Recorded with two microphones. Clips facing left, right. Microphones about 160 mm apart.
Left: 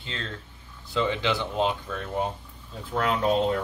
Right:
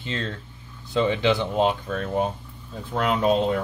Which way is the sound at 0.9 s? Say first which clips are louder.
Right 5 dB; 15° right (ahead or behind).